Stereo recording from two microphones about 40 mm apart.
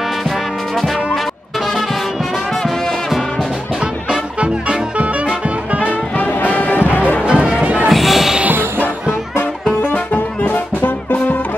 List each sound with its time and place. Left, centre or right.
0.7 s music: centre
4.4 s music: right
6.1 s music: left
7.2 s music: right
7.9 s a sound: centre
10.1 s music: left